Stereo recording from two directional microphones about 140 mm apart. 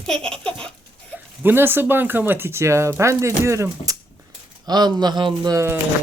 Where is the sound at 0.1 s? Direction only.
5° left (ahead or behind).